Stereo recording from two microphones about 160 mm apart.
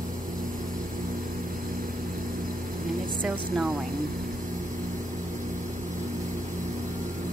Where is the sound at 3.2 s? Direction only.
5° right (ahead or behind).